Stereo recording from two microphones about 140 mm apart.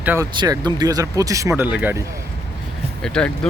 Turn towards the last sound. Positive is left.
turn(degrees=5)  # may be behind; listen again after turning